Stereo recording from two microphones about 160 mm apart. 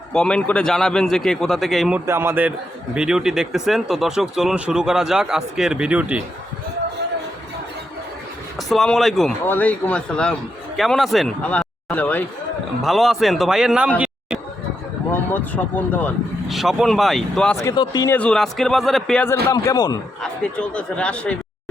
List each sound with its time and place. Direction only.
0.1 s speech: 5° left (ahead or behind)
2.0 s a man's voice: 15° right (ahead or behind)
8.5 s speech: 5° left (ahead or behind)
12.8 s speech: centre (ahead or behind)
15.1 s speech: 10° left (ahead or behind)
16.5 s speech: centre (ahead or behind)
17.6 s speech: 25° left (ahead or behind)
18.1 s speech: 5° left (ahead or behind)
19.5 s speech: 25° left (ahead or behind)
20.2 s speech: 5° left (ahead or behind)